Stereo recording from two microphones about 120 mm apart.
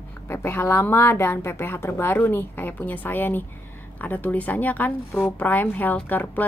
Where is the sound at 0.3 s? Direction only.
20° left (ahead or behind).